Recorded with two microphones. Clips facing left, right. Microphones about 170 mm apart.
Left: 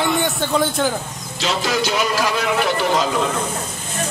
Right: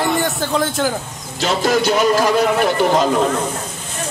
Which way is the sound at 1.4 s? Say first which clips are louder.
Right 4 dB; 50° right (ahead or behind).